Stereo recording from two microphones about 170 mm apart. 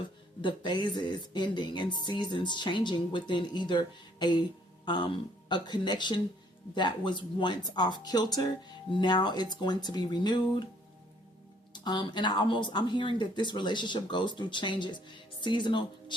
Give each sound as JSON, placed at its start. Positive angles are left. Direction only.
{"t": 0.4, "sound": "speech", "side_deg": 25}
{"t": 11.7, "sound": "speech", "side_deg": 25}